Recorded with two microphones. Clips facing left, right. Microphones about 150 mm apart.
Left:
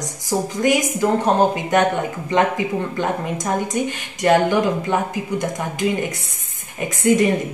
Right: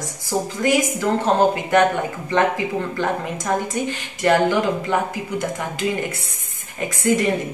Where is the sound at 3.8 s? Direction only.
15° left (ahead or behind).